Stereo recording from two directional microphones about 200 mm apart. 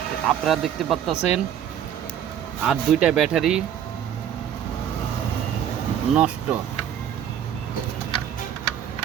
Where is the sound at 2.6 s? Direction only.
5° right (ahead or behind).